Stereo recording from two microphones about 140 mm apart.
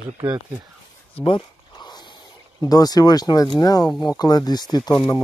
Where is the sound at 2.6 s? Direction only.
25° left (ahead or behind).